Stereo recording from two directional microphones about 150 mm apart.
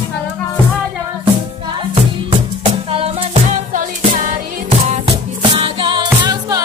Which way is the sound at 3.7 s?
60° right (ahead or behind).